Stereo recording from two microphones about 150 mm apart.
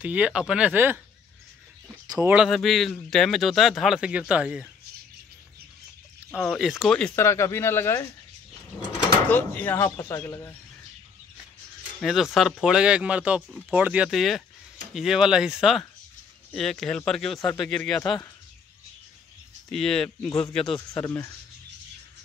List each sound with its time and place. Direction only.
0.0 s speech: 10° right (ahead or behind)
2.2 s speech: 5° right (ahead or behind)
6.4 s speech: centre (ahead or behind)
7.2 s speech: 20° left (ahead or behind)
9.3 s speech: 10° left (ahead or behind)
12.0 s speech: centre (ahead or behind)
19.7 s speech: 5° left (ahead or behind)
20.7 s speech: 20° left (ahead or behind)